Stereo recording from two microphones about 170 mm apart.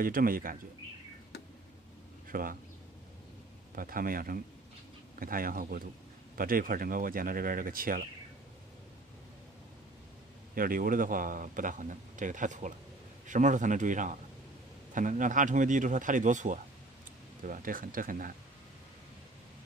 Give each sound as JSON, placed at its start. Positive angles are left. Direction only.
{"t": 0.0, "sound": "speech", "side_deg": -55}
{"t": 2.2, "sound": "a sound", "side_deg": -55}
{"t": 3.7, "sound": "speech", "side_deg": -55}
{"t": 10.5, "sound": "a man's voice", "side_deg": -55}